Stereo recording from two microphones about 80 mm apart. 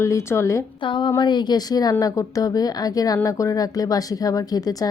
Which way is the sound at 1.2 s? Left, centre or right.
Left.